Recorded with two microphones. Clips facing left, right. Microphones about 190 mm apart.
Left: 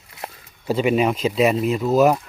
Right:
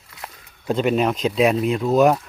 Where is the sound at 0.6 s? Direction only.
5° left (ahead or behind).